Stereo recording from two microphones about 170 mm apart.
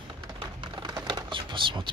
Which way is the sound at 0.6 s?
25° right (ahead or behind).